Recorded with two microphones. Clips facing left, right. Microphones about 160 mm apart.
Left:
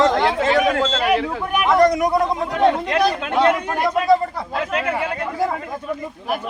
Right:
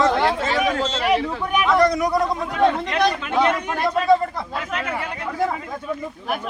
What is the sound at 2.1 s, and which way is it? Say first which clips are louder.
Speech: left 2 dB; 25° left (ahead or behind).